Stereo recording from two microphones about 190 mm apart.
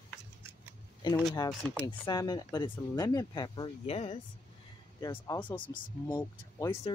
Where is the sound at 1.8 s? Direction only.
25° left (ahead or behind).